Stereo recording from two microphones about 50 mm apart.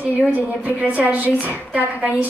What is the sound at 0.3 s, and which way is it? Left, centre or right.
A woman's voice, right.